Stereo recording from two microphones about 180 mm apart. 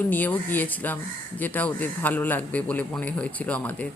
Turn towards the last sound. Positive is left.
turn(degrees=10)  # may be behind; listen again after turning